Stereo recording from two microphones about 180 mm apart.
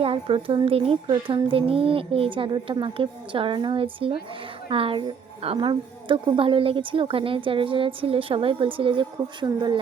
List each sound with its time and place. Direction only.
0.0 s a woman's voice: 30° right (ahead or behind)